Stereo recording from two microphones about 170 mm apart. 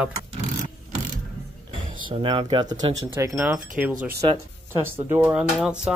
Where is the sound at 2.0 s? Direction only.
30° right (ahead or behind).